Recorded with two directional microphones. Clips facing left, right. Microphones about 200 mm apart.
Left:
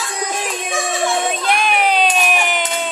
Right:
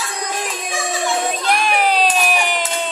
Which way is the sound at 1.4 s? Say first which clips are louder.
Even; centre (ahead or behind).